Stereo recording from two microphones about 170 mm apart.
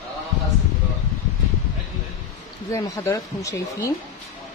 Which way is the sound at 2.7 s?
15° left (ahead or behind).